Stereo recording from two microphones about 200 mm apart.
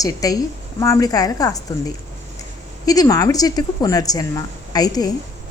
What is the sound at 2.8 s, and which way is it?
Speech, 20° left (ahead or behind).